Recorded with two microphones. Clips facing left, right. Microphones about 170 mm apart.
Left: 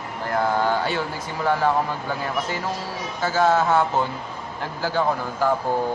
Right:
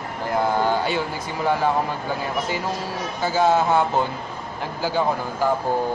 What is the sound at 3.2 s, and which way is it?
Speech, 15° right (ahead or behind).